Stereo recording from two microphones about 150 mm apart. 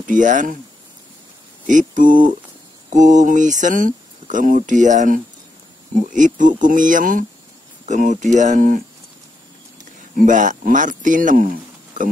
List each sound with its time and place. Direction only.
0.0 s speech: 60° right (ahead or behind)
1.7 s speech: 60° right (ahead or behind)
10.1 s speech: 55° right (ahead or behind)